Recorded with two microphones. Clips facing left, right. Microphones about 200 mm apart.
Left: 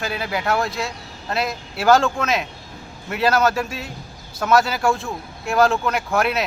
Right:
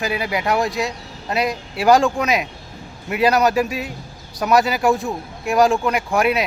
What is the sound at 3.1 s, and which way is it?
A man's voice, 15° right (ahead or behind).